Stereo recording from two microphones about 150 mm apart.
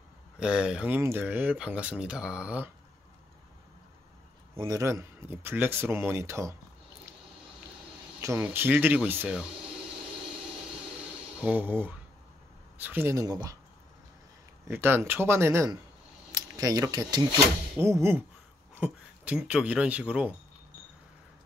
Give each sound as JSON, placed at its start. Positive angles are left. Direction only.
{"t": 0.4, "sound": "speech", "side_deg": -5}
{"t": 4.6, "sound": "speech", "side_deg": -25}
{"t": 8.2, "sound": "speech", "side_deg": -15}
{"t": 11.4, "sound": "speech", "side_deg": -10}
{"t": 14.7, "sound": "speech", "side_deg": -15}
{"t": 17.7, "sound": "speech", "side_deg": -15}